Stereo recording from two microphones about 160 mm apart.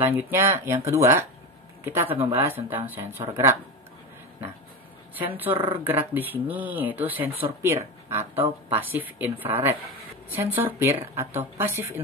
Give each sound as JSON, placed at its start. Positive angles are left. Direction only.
{"t": 0.0, "sound": "speech", "side_deg": -15}
{"t": 5.4, "sound": "speech", "side_deg": -10}